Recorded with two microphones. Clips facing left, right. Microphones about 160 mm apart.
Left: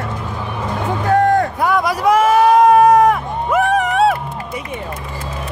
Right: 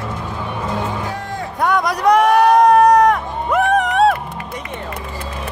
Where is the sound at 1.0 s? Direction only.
60° left (ahead or behind).